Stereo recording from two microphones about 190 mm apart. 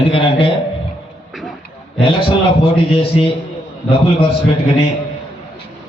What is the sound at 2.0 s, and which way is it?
A man's voice, 25° left (ahead or behind).